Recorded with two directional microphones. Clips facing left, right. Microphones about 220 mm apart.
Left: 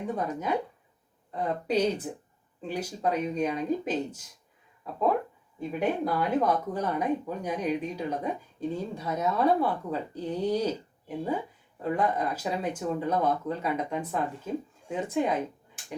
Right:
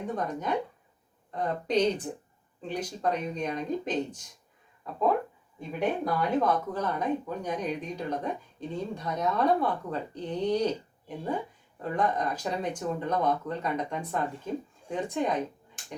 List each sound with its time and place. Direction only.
0.2 s speech: 5° left (ahead or behind)
11.8 s speech: 5° left (ahead or behind)